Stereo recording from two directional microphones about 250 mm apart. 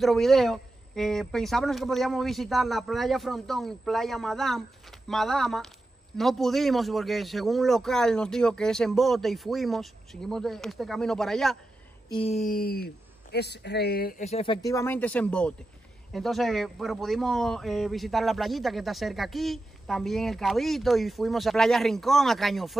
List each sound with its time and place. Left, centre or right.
0.0 s speech: centre
12.1 s speech: left; by 22.8 s centre